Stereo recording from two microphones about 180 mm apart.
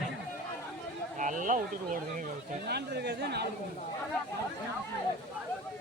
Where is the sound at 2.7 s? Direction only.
65° right (ahead or behind).